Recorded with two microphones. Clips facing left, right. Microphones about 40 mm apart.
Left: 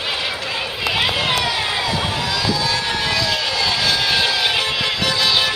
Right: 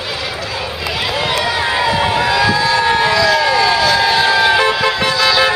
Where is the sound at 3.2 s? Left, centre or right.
Right.